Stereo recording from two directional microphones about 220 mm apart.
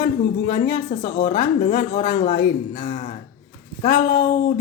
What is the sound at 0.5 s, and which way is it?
Speech, 35° left (ahead or behind).